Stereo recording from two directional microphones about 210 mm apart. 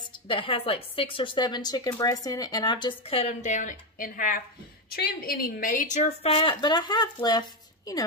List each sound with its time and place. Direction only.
0.3 s a woman's voice: 25° left (ahead or behind)